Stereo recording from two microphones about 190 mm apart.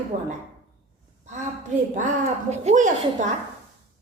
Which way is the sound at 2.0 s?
40° right (ahead or behind).